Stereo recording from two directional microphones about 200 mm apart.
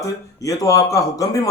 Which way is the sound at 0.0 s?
15° left (ahead or behind).